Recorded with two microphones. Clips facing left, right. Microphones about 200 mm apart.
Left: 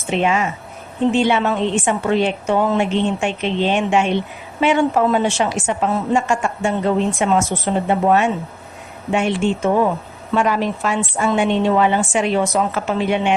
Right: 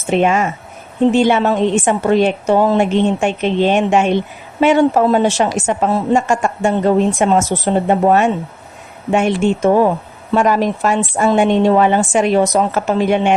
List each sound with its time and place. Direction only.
0.1 s a woman's voice: 50° right (ahead or behind)